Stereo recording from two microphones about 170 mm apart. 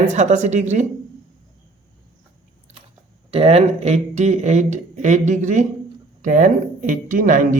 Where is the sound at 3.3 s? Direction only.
35° right (ahead or behind).